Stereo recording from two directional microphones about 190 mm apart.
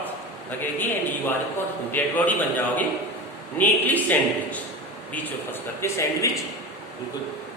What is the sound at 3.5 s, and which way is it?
A man's voice, 10° left (ahead or behind).